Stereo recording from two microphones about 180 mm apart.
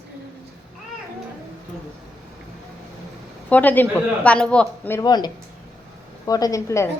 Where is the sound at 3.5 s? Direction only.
10° left (ahead or behind).